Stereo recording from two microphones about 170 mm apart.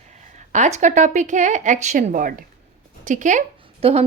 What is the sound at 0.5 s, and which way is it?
A woman's voice, 45° right (ahead or behind).